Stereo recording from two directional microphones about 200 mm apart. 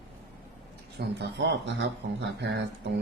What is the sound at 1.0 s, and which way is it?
Speech, 55° right (ahead or behind).